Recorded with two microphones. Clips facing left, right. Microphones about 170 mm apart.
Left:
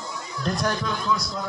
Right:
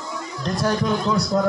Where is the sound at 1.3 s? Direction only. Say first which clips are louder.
Right 12 dB; 45° right (ahead or behind).